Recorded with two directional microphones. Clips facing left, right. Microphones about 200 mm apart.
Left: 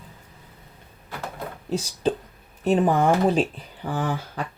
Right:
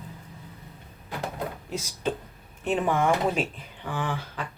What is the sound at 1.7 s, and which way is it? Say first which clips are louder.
Speech: left 8 dB; 30° left (ahead or behind).